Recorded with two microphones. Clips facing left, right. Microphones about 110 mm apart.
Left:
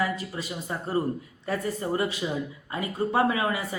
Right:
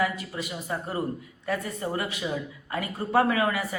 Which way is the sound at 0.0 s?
30° left (ahead or behind).